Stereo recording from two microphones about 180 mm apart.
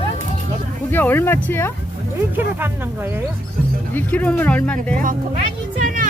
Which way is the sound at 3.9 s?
10° left (ahead or behind).